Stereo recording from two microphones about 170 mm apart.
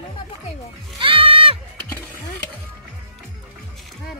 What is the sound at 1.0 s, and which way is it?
Music, 30° right (ahead or behind).